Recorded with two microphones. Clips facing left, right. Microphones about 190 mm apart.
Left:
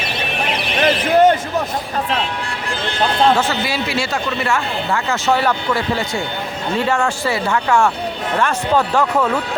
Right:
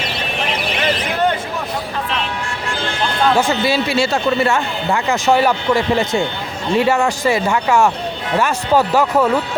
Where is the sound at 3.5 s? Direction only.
25° right (ahead or behind).